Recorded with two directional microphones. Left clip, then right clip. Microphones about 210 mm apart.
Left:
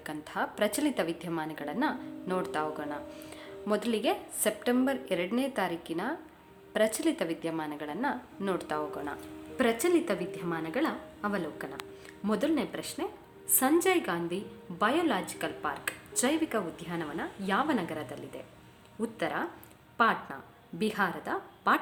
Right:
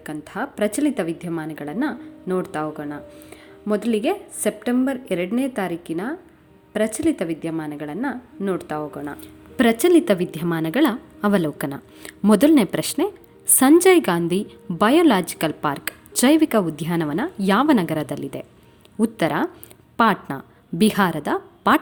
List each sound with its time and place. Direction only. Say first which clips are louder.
0.0 s a woman's voice: right 5 dB; 15° right (ahead or behind)
9.2 s a woman's voice: right 10 dB; 40° right (ahead or behind)